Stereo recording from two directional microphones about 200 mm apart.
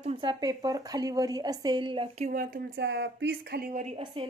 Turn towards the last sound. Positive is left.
turn(degrees=-35)  # may be behind; listen again after turning